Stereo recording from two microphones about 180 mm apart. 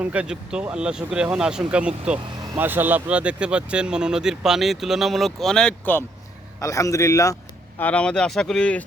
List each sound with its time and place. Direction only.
0.0 s speech: 5° right (ahead or behind)